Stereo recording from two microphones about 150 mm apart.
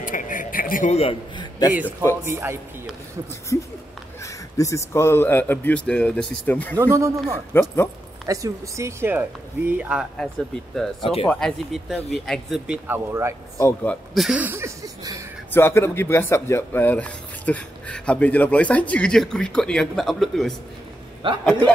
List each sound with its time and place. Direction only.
0.0 s a sound: 60° left (ahead or behind)
0.9 s a man's voice: 40° left (ahead or behind)
1.7 s speech: 10° right (ahead or behind)
3.5 s speech: 20° left (ahead or behind)
6.8 s speech: 20° right (ahead or behind)
7.5 s speech: 15° left (ahead or behind)
8.3 s speech: 20° right (ahead or behind)
10.1 s speech: centre (ahead or behind)
11.0 s speech: 40° left (ahead or behind)
11.2 s speech: 5° left (ahead or behind); by 13.3 s 15° right (ahead or behind)
13.8 s speech: centre (ahead or behind)
15.5 s speech: 15° left (ahead or behind)
21.2 s a man's voice: 35° right (ahead or behind)